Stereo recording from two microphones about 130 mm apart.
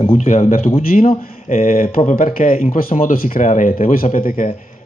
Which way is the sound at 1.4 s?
80° left.